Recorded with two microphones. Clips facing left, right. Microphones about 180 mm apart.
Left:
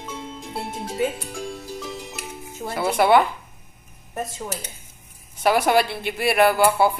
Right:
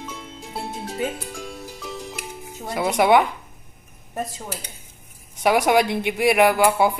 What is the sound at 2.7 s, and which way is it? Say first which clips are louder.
Speech: even; 15° right (ahead or behind).